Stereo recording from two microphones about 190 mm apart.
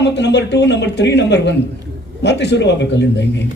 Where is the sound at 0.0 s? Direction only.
65° left (ahead or behind).